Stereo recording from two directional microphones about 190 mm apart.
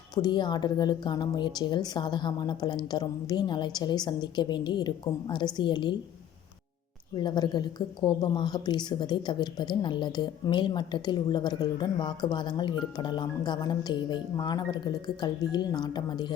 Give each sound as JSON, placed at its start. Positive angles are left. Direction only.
{"t": 0.1, "sound": "a woman's voice", "side_deg": 20}
{"t": 7.2, "sound": "a woman's voice", "side_deg": 25}